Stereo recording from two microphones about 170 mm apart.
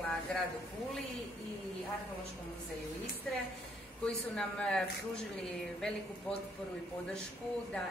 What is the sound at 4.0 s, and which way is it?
A woman's voice, 5° left (ahead or behind).